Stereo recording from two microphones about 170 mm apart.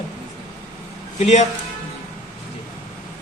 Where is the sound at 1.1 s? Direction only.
40° left (ahead or behind).